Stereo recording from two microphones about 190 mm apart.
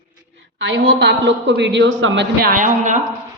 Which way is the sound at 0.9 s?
65° right (ahead or behind).